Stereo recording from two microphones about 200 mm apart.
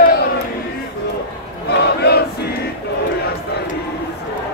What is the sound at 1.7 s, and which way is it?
Crowd, 55° left (ahead or behind).